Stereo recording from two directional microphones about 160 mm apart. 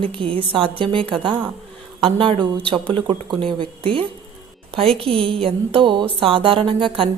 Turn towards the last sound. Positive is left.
turn(degrees=-35)  # may be behind; listen again after turning